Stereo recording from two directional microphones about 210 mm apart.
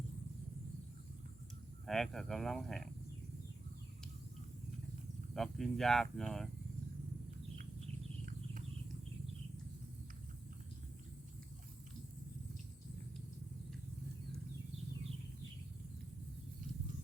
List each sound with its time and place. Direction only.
1.9 s speech: centre (ahead or behind)
5.3 s speech: centre (ahead or behind)
8.2 s a sound: 40° right (ahead or behind)